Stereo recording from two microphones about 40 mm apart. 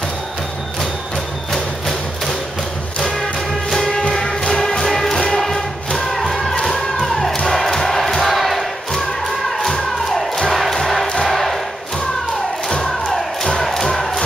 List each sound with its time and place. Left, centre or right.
1.5 s music: centre
4.1 s music: centre
6.6 s thump: centre
7.4 s music: centre
8.4 s battle cry: centre
9.7 s thump: centre
10.5 s music: centre
11.2 s crowd: centre
12.7 s crowd: centre
13.6 s music: centre